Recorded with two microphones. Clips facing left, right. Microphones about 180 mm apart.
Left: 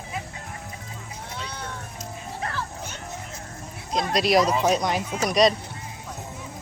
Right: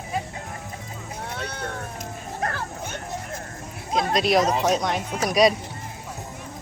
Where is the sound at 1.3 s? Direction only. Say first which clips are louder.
Right 3 dB; 55° right (ahead or behind).